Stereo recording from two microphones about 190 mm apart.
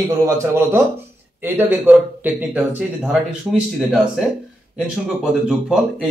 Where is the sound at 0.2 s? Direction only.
15° right (ahead or behind).